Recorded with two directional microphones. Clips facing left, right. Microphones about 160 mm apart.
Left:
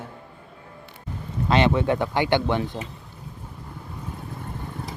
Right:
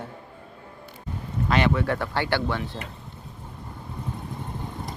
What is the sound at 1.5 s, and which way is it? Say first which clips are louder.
Speech: left 3 dB; 25° left (ahead or behind).